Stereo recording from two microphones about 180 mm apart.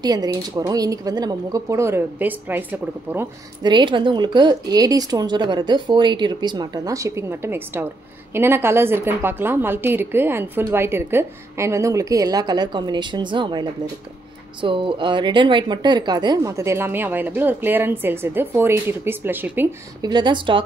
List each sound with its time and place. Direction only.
0.0 s a woman's voice: 20° right (ahead or behind)
3.6 s a woman's voice: 25° right (ahead or behind)
20.0 s speech: 25° right (ahead or behind)